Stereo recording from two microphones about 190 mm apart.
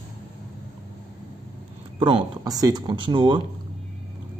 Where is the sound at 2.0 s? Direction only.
30° right (ahead or behind).